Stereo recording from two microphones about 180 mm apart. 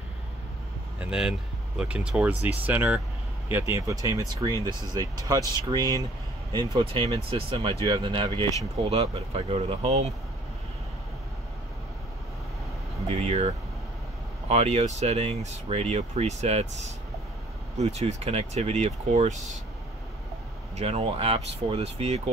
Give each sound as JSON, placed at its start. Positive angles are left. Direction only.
{"t": 0.9, "sound": "speech", "side_deg": -5}
{"t": 13.1, "sound": "speech", "side_deg": -35}
{"t": 17.7, "sound": "speech", "side_deg": -40}
{"t": 20.7, "sound": "speech", "side_deg": -35}